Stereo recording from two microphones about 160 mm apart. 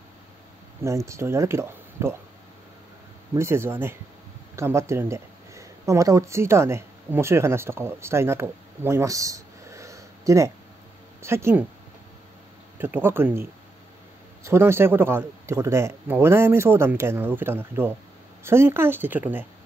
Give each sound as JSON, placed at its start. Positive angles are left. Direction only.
{"t": 0.8, "sound": "a man's voice", "side_deg": -20}
{"t": 3.3, "sound": "a man's voice", "side_deg": -15}
{"t": 12.7, "sound": "a man's voice", "side_deg": -15}